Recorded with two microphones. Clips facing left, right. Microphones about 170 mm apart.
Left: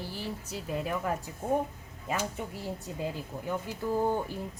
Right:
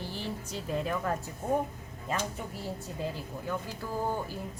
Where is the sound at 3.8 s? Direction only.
20° left (ahead or behind).